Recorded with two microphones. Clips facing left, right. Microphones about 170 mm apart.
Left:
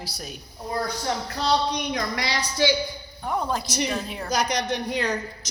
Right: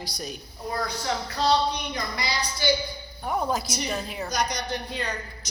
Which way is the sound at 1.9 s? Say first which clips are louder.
Left 4 dB; 90° left.